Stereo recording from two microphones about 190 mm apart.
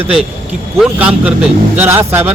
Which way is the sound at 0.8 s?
5° right (ahead or behind).